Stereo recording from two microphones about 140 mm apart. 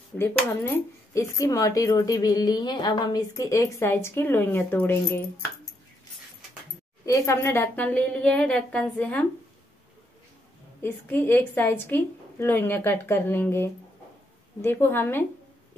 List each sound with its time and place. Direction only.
1.1 s a woman's voice: 20° left (ahead or behind)
7.1 s a woman's voice: 20° left (ahead or behind)
10.8 s a woman's voice: 15° left (ahead or behind)